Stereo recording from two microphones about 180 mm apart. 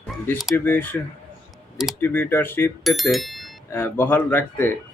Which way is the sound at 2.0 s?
10° left (ahead or behind).